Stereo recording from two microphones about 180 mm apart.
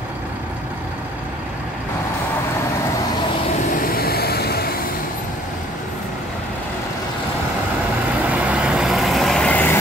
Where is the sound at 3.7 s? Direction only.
55° left (ahead or behind).